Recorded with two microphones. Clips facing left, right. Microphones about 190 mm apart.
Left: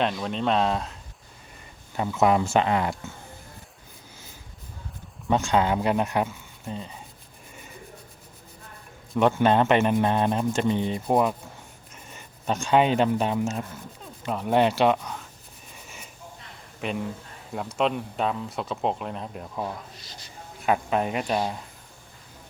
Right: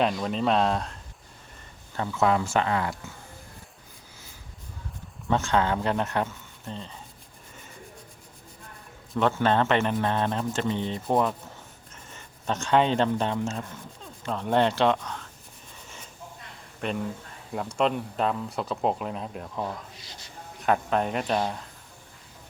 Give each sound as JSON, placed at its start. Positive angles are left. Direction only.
{"t": 0.0, "sound": "speech", "side_deg": 0}
{"t": 2.0, "sound": "speech", "side_deg": 15}
{"t": 5.3, "sound": "speech", "side_deg": 15}
{"t": 9.1, "sound": "speech", "side_deg": 15}
{"t": 16.8, "sound": "speech", "side_deg": 0}